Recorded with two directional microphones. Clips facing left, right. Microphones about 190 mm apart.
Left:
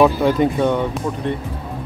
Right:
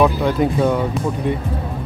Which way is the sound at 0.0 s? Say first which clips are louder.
Left 2 dB; centre (ahead or behind).